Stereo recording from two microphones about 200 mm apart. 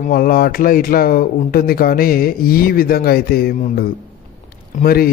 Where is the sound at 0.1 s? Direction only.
50° left (ahead or behind).